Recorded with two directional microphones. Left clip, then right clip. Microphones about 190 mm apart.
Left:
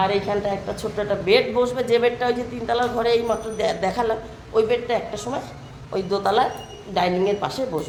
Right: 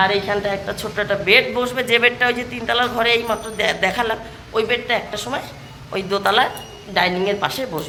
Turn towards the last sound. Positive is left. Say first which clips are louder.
# right 2 dB
turn(degrees=5)  # may be behind; listen again after turning